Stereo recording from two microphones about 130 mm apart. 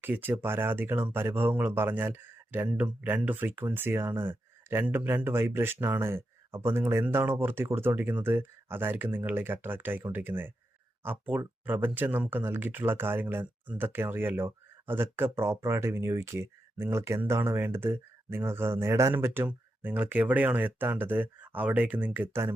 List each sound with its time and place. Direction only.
0.0 s speech: 15° right (ahead or behind)